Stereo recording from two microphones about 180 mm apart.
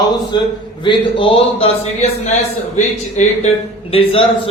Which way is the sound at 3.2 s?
40° left (ahead or behind).